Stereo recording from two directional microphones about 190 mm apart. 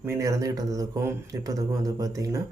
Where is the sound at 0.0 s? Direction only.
15° right (ahead or behind).